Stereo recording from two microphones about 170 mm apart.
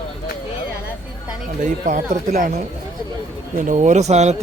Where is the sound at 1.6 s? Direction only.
45° right (ahead or behind).